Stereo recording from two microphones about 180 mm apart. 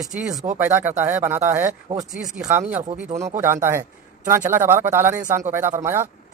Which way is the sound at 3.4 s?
15° right (ahead or behind).